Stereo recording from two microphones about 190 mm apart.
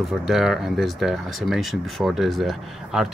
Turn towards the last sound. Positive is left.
turn(degrees=0)  # may be behind; listen again after turning